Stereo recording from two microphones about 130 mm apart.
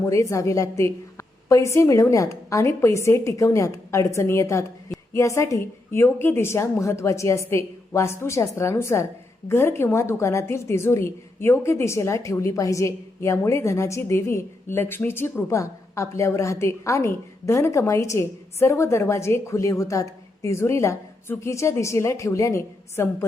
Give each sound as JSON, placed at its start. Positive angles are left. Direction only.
{"t": 0.1, "sound": "a woman's voice", "side_deg": 25}